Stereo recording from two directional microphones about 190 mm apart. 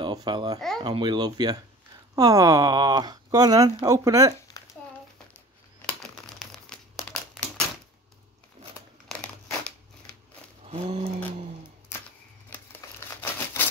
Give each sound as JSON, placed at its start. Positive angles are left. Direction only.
{"t": 0.0, "sound": "speech", "side_deg": -20}
{"t": 0.6, "sound": "speech", "side_deg": 0}
{"t": 0.8, "sound": "speech", "side_deg": -25}
{"t": 7.0, "sound": "a sound", "side_deg": 5}
{"t": 9.1, "sound": "crumpling", "side_deg": 5}
{"t": 10.7, "sound": "speech", "side_deg": -30}
{"t": 12.8, "sound": "crumpling", "side_deg": 15}